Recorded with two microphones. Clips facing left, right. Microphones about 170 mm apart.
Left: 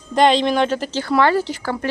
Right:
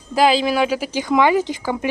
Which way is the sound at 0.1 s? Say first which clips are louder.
Left 1 dB; 5° right (ahead or behind).